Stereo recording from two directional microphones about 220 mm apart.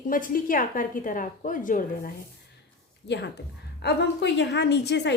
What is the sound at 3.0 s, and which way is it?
A woman's voice, 50° left (ahead or behind).